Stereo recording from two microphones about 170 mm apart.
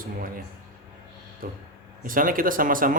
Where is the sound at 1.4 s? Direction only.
55° right (ahead or behind).